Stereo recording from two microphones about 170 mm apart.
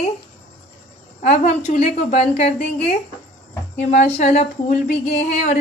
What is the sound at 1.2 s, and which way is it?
A woman's voice, 40° left (ahead or behind).